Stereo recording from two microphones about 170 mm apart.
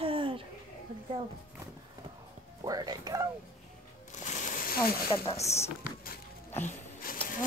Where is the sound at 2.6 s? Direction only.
20° right (ahead or behind).